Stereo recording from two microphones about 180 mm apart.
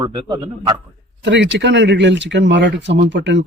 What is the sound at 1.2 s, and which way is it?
Speech, 80° right.